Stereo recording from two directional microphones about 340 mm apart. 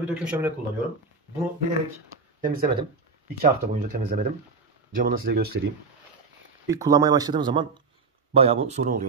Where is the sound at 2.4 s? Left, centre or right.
Right.